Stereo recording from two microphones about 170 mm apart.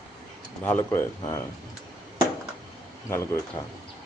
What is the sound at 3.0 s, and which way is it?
Speech, 15° left (ahead or behind).